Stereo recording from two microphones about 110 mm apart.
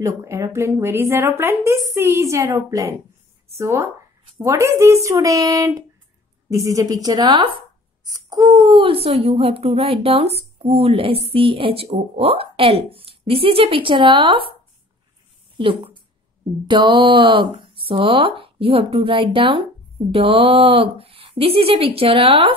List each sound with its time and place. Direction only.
0.0 s a woman's voice: 30° right (ahead or behind); by 14.4 s 45° right (ahead or behind)
15.5 s speech: 55° right (ahead or behind)